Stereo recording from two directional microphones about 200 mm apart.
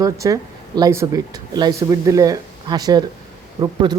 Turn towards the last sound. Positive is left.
turn(degrees=-20)  # may be behind; listen again after turning